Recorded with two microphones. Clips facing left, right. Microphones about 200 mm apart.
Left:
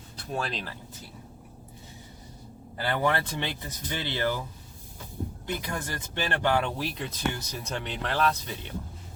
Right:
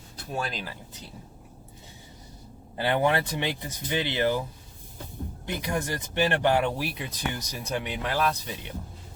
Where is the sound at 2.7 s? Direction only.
20° right (ahead or behind).